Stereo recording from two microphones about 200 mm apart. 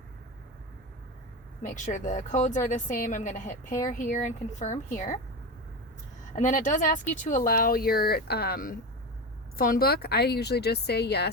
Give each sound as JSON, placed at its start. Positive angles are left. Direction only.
{"t": 1.6, "sound": "speech", "side_deg": 40}
{"t": 6.3, "sound": "speech", "side_deg": 40}